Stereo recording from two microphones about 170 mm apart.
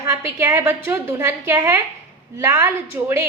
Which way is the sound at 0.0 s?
15° right (ahead or behind).